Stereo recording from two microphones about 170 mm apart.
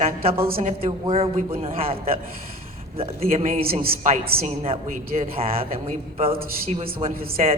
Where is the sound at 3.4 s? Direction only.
60° right (ahead or behind).